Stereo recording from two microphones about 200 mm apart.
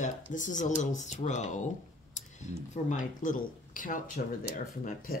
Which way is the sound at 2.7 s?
40° left (ahead or behind).